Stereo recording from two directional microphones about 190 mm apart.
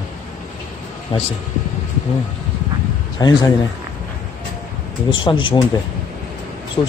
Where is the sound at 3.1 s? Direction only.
20° left (ahead or behind).